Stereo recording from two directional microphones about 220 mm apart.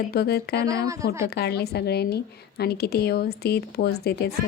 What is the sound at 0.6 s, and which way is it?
Speech, 15° right (ahead or behind).